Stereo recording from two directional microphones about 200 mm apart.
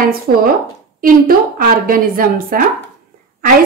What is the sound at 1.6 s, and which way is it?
A woman's voice, 45° right (ahead or behind).